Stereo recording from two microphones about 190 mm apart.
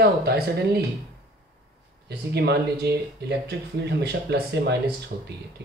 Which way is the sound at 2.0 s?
60° right (ahead or behind).